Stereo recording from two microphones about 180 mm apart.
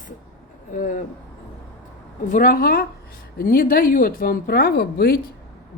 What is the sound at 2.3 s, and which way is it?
A woman's voice, 50° left (ahead or behind).